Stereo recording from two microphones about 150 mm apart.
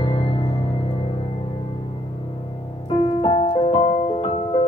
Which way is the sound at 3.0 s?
35° left (ahead or behind).